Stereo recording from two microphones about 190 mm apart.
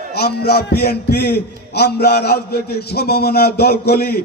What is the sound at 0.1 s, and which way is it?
A man's voice, 55° left (ahead or behind).